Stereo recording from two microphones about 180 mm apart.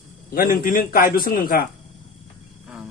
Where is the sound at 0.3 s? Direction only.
55° left (ahead or behind).